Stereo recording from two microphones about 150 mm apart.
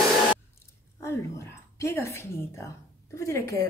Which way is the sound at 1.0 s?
20° left (ahead or behind).